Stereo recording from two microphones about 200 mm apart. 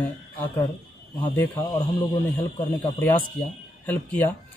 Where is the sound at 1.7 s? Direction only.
20° left (ahead or behind).